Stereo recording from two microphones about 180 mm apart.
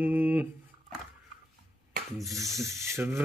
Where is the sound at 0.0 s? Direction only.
10° right (ahead or behind).